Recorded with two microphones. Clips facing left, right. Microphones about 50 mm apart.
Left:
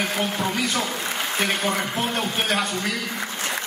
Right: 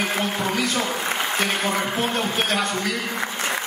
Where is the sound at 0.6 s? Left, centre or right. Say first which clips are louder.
Right 1 dB; centre.